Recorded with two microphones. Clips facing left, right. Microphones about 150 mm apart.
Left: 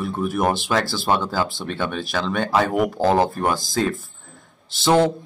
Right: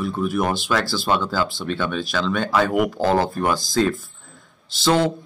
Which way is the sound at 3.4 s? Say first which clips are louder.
Even; 50° left (ahead or behind).